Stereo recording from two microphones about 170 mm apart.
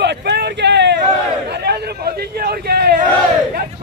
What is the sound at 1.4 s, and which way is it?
Chatter, 70° right (ahead or behind).